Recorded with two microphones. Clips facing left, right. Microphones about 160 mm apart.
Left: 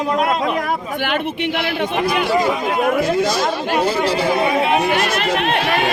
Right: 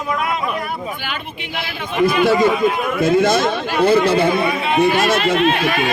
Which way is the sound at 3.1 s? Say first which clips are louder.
Right 4 dB; 55° right (ahead or behind).